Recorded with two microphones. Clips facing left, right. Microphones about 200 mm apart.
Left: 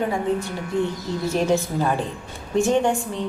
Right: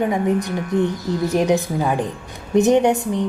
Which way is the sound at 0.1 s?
15° right (ahead or behind).